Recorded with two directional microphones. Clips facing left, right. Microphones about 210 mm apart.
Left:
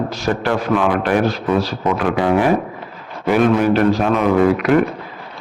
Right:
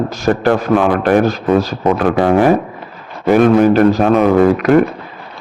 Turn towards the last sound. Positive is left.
turn(degrees=-45)  # may be behind; listen again after turning